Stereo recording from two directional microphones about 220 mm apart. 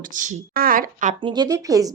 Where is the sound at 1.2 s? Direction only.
20° right (ahead or behind).